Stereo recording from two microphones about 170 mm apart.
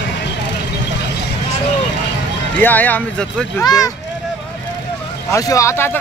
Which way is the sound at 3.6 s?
20° left (ahead or behind).